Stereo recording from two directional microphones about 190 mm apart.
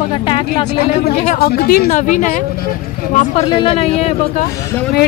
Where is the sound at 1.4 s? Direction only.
50° left (ahead or behind).